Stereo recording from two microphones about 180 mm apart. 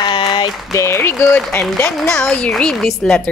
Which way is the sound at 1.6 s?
Centre (ahead or behind).